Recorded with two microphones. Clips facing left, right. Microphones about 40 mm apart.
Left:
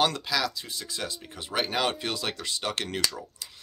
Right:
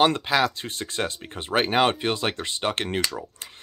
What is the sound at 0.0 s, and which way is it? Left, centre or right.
Speech, right.